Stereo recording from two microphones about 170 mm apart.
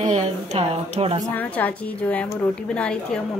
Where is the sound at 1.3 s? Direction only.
10° left (ahead or behind).